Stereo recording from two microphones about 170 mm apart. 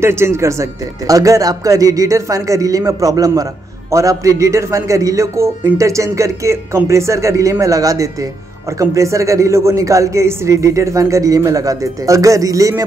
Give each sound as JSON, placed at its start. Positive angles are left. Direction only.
{"t": 0.0, "sound": "a man's voice", "side_deg": -15}